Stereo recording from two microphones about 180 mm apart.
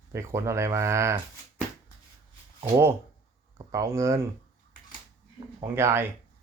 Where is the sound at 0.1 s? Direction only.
15° right (ahead or behind).